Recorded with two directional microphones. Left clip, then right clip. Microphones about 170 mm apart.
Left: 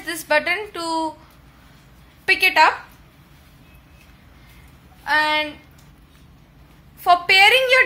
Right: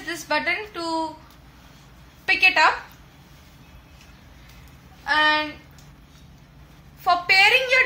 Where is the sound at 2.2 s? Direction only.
60° left (ahead or behind).